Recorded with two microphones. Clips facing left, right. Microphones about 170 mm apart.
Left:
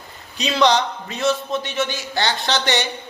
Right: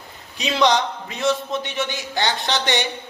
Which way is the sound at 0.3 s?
15° right (ahead or behind).